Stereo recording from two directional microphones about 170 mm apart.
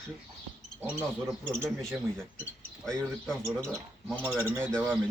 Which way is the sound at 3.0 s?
Centre (ahead or behind).